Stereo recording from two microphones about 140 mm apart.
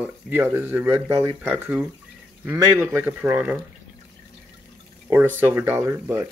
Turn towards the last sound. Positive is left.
turn(degrees=-20)  # may be behind; listen again after turning